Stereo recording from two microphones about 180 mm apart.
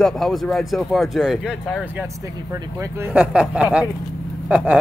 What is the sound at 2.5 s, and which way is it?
Speech, 15° right (ahead or behind).